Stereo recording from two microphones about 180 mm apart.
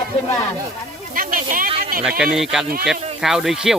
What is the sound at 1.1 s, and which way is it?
Speech, 50° right (ahead or behind).